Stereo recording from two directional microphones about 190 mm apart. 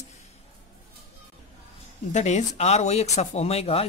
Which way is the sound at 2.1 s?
35° left (ahead or behind).